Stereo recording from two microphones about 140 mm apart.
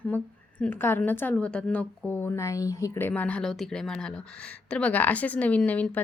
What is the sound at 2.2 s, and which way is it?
Speech, 20° left (ahead or behind).